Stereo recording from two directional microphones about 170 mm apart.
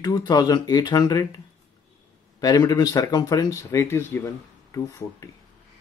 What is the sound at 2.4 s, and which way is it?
Speech, 20° left (ahead or behind).